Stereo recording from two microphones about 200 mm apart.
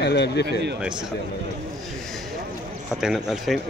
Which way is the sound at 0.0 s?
55° left (ahead or behind).